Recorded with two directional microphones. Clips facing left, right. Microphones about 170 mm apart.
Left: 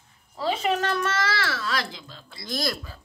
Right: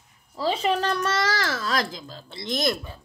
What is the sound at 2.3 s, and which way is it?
Speech, 20° right (ahead or behind).